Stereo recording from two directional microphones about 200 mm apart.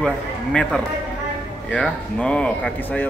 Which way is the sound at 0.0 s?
5° left (ahead or behind).